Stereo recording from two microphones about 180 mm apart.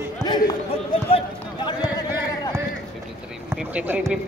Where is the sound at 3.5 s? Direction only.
10° right (ahead or behind).